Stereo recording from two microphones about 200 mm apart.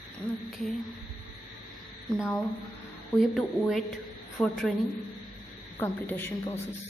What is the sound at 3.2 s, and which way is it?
Speech, centre (ahead or behind).